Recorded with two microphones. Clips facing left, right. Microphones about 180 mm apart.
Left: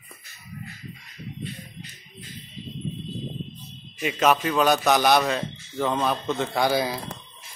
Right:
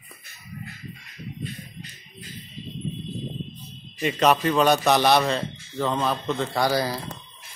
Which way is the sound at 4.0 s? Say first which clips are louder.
Right 1 dB; centre (ahead or behind).